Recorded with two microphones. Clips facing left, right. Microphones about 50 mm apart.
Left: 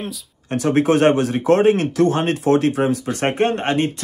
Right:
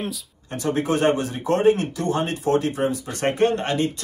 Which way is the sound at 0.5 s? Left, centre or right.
Left.